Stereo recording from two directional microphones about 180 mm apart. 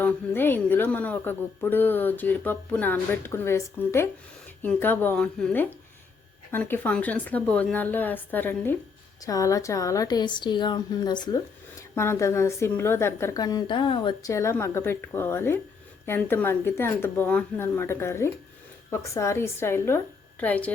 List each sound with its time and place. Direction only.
0.0 s a woman's voice: 10° left (ahead or behind)